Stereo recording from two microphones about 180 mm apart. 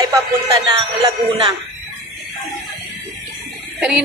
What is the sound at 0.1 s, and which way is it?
Speech, 20° right (ahead or behind).